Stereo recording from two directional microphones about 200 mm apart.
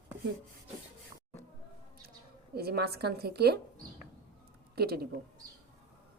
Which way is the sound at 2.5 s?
50° right (ahead or behind).